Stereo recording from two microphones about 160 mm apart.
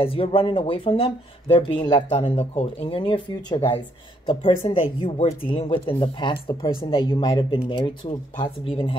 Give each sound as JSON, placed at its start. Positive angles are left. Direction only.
{"t": 0.0, "sound": "speech", "side_deg": 35}
{"t": 2.3, "sound": "speech", "side_deg": 40}